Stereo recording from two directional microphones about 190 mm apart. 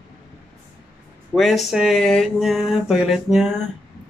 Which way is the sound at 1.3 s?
Centre (ahead or behind).